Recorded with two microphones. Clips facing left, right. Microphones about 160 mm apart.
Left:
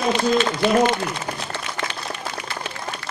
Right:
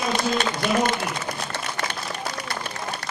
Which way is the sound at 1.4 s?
40° right (ahead or behind).